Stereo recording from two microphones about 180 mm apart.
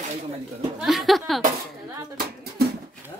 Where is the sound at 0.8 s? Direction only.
Centre (ahead or behind).